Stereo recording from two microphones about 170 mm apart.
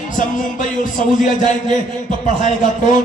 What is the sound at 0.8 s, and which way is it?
A man's voice, 45° left (ahead or behind).